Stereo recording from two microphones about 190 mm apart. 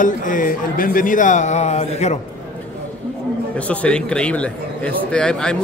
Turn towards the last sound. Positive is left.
turn(degrees=5)  # may be behind; listen again after turning